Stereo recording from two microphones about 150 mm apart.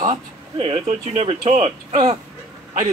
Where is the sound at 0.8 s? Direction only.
45° right (ahead or behind).